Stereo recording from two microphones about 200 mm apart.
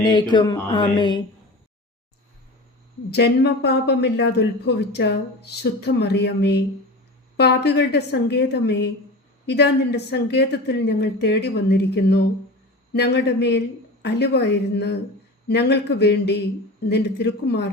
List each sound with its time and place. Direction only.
0.0 s speech: 20° left (ahead or behind)
3.1 s speech: 55° left (ahead or behind)